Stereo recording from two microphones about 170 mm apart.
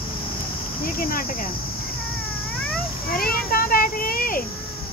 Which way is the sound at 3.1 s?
60° left (ahead or behind).